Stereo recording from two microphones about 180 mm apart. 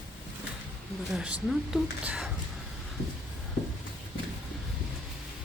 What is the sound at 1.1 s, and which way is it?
Speech, 5° right (ahead or behind).